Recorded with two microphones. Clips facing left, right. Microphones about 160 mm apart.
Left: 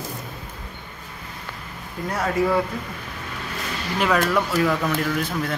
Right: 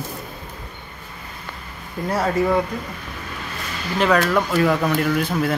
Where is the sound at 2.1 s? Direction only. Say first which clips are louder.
Right 2 dB; 30° right (ahead or behind).